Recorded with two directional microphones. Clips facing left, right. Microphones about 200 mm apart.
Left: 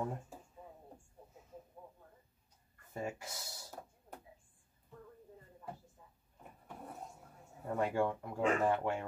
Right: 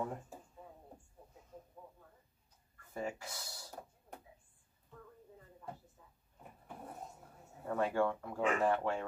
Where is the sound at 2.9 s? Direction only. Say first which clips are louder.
Even; 20° left (ahead or behind).